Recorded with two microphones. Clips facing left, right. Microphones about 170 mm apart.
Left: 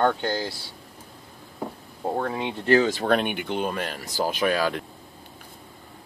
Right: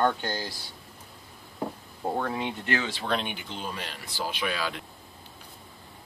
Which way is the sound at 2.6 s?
40° left (ahead or behind).